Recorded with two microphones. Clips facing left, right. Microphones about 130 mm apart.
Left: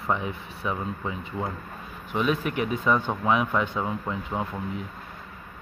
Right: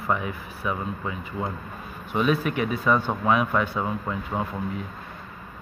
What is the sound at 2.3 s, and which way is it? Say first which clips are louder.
Speech: right 2 dB; 15° left (ahead or behind).